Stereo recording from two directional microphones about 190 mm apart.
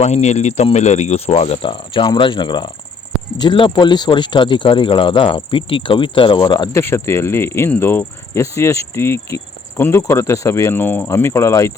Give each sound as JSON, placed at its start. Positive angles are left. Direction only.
{"t": 0.0, "sound": "speech", "side_deg": 35}